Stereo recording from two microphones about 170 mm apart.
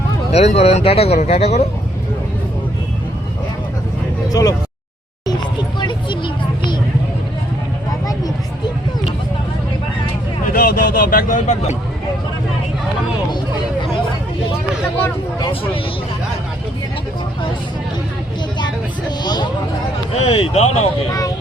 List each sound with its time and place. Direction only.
0.3 s speech: 40° left (ahead or behind)
4.3 s speech: 20° left (ahead or behind)
5.8 s a sound: 30° left (ahead or behind)
8.0 s a sound: 20° left (ahead or behind)
10.5 s speech: 60° left (ahead or behind); by 11.8 s 45° left (ahead or behind)
19.2 s speech: 25° left (ahead or behind)
20.1 s speech: 40° left (ahead or behind)
21.1 s speech: 20° left (ahead or behind)